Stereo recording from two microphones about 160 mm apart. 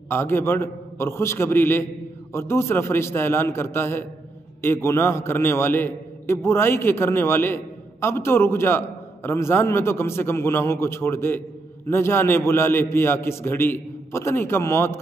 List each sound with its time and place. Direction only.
0.1 s a man's voice: 15° left (ahead or behind)